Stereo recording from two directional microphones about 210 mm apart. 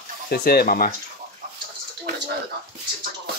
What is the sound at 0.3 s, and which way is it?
Speech, 45° left (ahead or behind).